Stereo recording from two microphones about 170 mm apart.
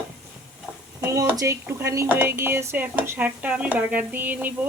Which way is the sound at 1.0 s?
20° right (ahead or behind).